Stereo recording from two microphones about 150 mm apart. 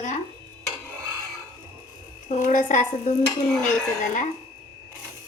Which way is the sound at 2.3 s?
55° left (ahead or behind).